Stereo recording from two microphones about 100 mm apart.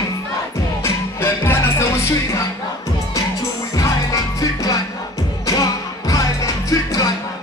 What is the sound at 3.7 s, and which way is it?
Music, 35° left (ahead or behind).